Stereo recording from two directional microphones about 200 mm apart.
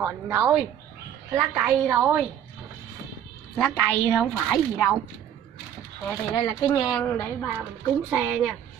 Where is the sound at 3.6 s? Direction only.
10° left (ahead or behind).